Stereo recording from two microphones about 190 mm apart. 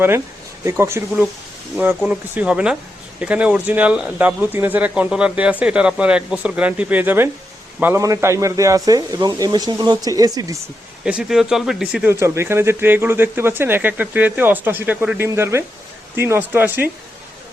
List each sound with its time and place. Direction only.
0.6 s speech: 15° right (ahead or behind)
11.0 s speech: 5° right (ahead or behind)